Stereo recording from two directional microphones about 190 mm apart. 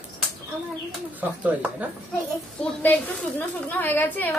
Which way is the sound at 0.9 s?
10° right (ahead or behind).